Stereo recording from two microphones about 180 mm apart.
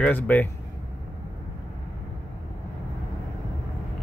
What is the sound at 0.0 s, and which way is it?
Speech, 10° left (ahead or behind).